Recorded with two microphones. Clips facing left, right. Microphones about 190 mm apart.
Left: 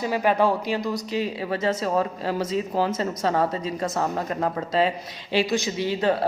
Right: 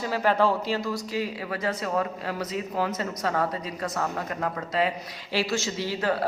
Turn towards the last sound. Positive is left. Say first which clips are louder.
# left 4 dB
turn(degrees=20)  # may be behind; listen again after turning